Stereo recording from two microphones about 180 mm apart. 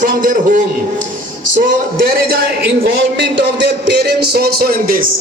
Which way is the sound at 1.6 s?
50° right (ahead or behind).